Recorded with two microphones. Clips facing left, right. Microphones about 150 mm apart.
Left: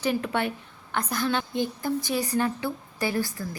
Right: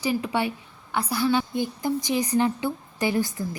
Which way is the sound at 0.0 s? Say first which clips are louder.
Right 1 dB; 10° right (ahead or behind).